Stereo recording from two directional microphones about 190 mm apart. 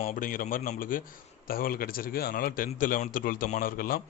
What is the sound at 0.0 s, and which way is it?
A man's voice, 45° left (ahead or behind).